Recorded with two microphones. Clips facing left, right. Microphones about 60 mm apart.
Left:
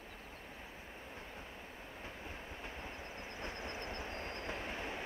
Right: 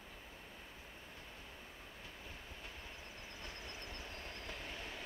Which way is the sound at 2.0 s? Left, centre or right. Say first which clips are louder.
Left 7 dB; left.